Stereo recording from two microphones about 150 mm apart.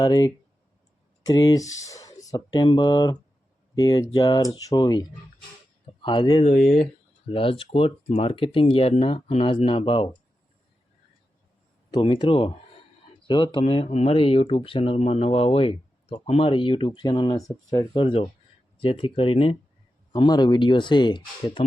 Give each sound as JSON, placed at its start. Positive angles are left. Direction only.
{"t": 0.0, "sound": "speech", "side_deg": 25}
{"t": 6.4, "sound": "speech", "side_deg": 70}
{"t": 7.3, "sound": "speech", "side_deg": 35}
{"t": 11.9, "sound": "speech", "side_deg": 35}
{"t": 17.9, "sound": "speech", "side_deg": 35}